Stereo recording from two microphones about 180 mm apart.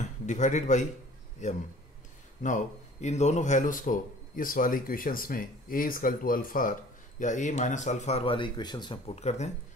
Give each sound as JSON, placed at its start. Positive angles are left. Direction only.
{"t": 0.3, "sound": "a man's voice", "side_deg": 40}